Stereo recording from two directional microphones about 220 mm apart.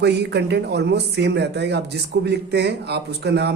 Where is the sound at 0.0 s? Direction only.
50° right (ahead or behind).